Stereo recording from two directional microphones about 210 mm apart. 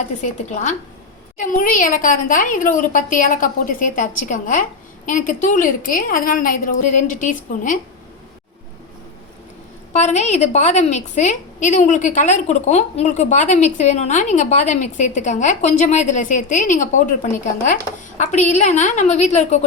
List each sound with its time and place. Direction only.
0.2 s a woman's voice: 35° left (ahead or behind)
9.9 s a woman's voice: 35° left (ahead or behind)